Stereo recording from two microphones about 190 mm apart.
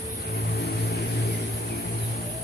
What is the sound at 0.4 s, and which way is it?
Vehicle, 60° left (ahead or behind).